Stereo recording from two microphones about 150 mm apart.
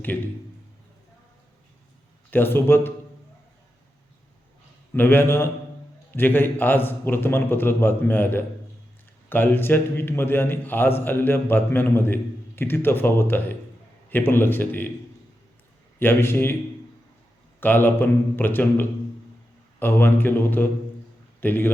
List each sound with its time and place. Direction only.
2.3 s a man's voice: 15° left (ahead or behind)
4.9 s a man's voice: 15° left (ahead or behind)
16.0 s a man's voice: 15° left (ahead or behind)
17.6 s a man's voice: 15° left (ahead or behind)